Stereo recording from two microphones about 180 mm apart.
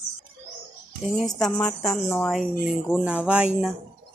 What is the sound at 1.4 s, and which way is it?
Speech, 5° left (ahead or behind).